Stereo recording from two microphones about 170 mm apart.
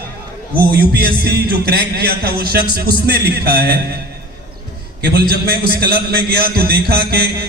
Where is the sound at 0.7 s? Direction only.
65° right (ahead or behind).